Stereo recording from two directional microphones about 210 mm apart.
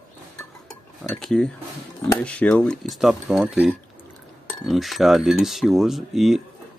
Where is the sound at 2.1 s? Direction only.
5° left (ahead or behind).